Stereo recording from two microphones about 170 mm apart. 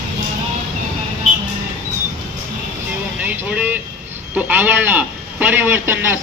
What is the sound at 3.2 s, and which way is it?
Vehicle, 10° right (ahead or behind).